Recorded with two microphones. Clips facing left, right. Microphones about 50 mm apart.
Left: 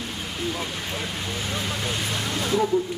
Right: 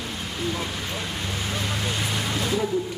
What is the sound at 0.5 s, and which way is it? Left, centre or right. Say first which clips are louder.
Speech: even; centre.